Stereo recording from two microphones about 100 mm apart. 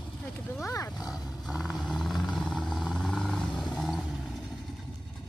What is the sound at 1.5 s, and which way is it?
Vehicle, 5° right (ahead or behind).